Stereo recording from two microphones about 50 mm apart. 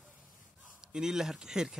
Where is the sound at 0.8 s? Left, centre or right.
Centre.